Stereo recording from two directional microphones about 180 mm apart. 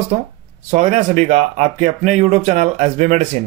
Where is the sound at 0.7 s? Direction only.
40° right (ahead or behind).